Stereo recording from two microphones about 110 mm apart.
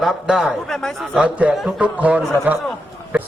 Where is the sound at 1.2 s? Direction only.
10° right (ahead or behind).